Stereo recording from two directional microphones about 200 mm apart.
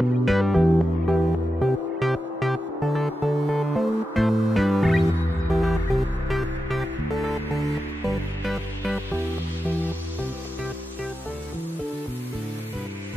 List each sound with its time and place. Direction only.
0.2 s music: centre (ahead or behind)